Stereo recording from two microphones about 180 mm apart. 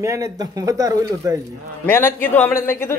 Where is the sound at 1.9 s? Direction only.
10° left (ahead or behind).